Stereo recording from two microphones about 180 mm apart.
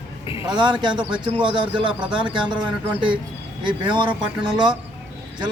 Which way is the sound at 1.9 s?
5° right (ahead or behind).